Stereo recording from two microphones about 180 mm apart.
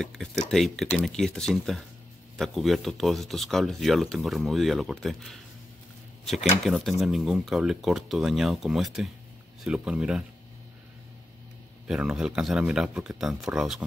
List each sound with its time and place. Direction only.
0.0 s speech: centre (ahead or behind)
6.6 s speech: centre (ahead or behind)
11.9 s speech: 5° right (ahead or behind)